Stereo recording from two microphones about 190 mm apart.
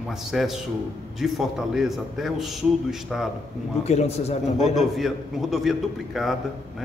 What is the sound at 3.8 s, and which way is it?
Speech, 35° left (ahead or behind).